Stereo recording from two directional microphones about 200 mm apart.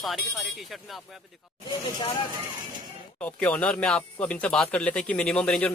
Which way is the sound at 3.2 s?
5° left (ahead or behind).